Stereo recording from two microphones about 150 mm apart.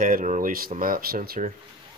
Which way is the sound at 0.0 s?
60° right (ahead or behind).